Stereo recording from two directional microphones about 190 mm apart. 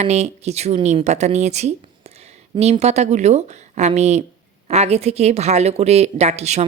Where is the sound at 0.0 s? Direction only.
35° right (ahead or behind).